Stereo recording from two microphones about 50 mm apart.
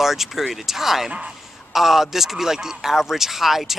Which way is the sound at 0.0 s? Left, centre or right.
Centre.